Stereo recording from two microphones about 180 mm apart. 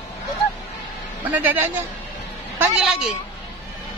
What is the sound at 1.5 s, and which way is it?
A woman's voice, 10° right (ahead or behind).